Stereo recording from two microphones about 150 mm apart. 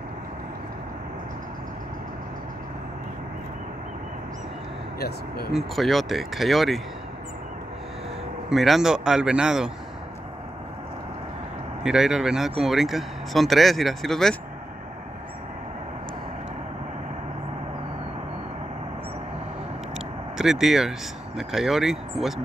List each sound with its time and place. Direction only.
4.9 s speech: 90° left
5.5 s speech: centre (ahead or behind)
8.5 s speech: centre (ahead or behind)
11.8 s speech: 5° right (ahead or behind)
20.3 s speech: 5° right (ahead or behind)